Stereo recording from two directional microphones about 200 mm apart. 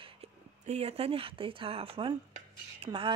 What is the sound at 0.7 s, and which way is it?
Speech, 30° right (ahead or behind).